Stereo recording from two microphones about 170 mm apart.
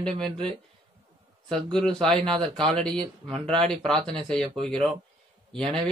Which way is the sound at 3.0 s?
35° right (ahead or behind).